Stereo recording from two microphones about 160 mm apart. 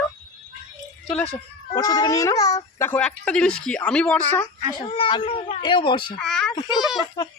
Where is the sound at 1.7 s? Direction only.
25° left (ahead or behind).